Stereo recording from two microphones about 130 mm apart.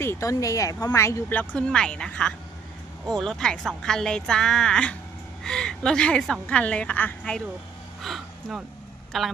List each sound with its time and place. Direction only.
0.0 s a woman's voice: 20° left (ahead or behind)
8.0 s a sound: centre (ahead or behind)
9.1 s a woman's voice: centre (ahead or behind)